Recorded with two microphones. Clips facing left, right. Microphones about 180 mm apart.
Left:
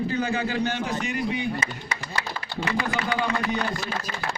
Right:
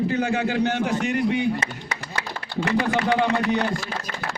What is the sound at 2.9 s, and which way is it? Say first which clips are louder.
Speech: right 5 dB; 70° right (ahead or behind).